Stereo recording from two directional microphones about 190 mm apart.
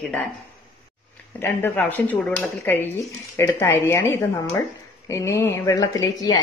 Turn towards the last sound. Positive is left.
turn(degrees=20)  # may be behind; listen again after turning